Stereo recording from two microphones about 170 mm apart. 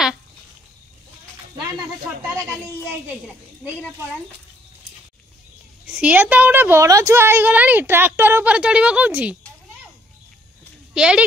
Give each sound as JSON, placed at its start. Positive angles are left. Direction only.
{"t": 5.9, "sound": "a woman's voice", "side_deg": -5}
{"t": 11.0, "sound": "speech", "side_deg": -5}